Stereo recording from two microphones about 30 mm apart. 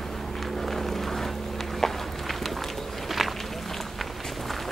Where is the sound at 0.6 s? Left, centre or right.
Centre.